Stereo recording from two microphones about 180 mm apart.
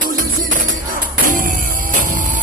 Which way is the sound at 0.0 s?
50° right (ahead or behind).